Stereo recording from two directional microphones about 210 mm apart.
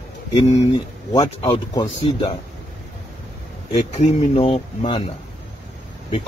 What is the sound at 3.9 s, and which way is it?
Speech, 30° left (ahead or behind).